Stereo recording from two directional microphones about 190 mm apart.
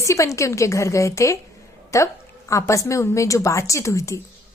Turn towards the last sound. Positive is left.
turn(degrees=15)  # may be behind; listen again after turning